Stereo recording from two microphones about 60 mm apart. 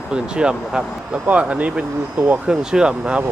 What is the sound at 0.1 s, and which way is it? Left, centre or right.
Speech, centre.